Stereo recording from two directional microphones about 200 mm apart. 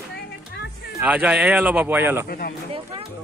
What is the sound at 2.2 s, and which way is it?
Speech, 50° left (ahead or behind).